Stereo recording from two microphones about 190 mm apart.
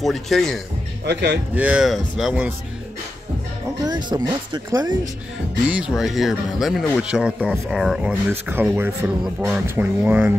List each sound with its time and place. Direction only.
0.0 s speech: centre (ahead or behind)
1.0 s speech: 65° right (ahead or behind)
1.5 s speech: 5° right (ahead or behind)
3.8 s speech: 20° right (ahead or behind)
5.7 s speech: 5° right (ahead or behind)